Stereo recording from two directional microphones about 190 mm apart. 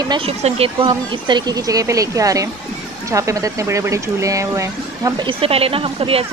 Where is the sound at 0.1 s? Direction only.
30° right (ahead or behind).